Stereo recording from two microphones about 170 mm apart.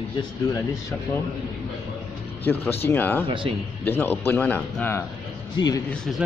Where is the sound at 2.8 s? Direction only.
10° left (ahead or behind).